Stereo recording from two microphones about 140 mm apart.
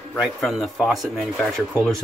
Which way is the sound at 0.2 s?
Centre (ahead or behind).